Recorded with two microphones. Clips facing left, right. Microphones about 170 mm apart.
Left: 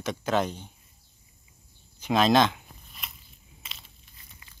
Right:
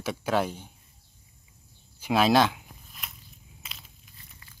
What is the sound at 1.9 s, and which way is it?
Zipper, 10° right (ahead or behind).